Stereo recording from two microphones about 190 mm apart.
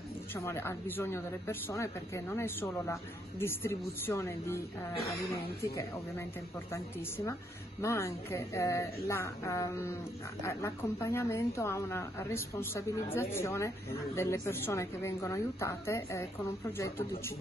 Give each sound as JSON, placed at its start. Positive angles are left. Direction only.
{"t": 0.3, "sound": "speech", "side_deg": 15}